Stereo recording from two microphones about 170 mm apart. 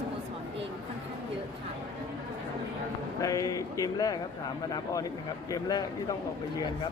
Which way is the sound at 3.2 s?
20° left (ahead or behind).